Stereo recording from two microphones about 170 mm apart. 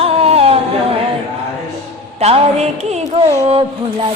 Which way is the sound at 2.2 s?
35° right (ahead or behind).